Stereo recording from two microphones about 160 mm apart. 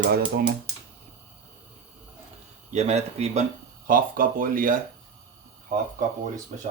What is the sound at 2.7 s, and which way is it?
Speech, 45° right (ahead or behind).